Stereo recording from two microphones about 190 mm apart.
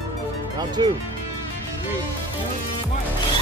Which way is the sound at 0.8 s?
25° right (ahead or behind).